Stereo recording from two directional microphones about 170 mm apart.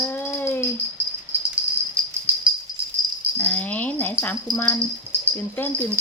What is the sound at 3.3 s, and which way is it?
Rattle, 10° left (ahead or behind).